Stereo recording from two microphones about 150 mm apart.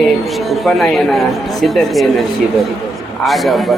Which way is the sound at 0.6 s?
Centre (ahead or behind).